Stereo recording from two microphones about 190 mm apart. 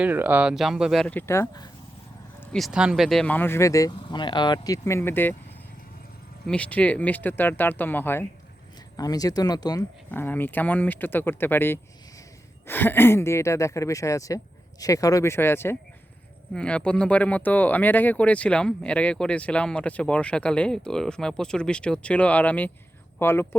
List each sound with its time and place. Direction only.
0.0 s speech: 10° right (ahead or behind); by 1.6 s 15° left (ahead or behind)
2.4 s speech: 5° left (ahead or behind)
6.5 s speech: 5° left (ahead or behind)
10.1 s speech: 10° left (ahead or behind)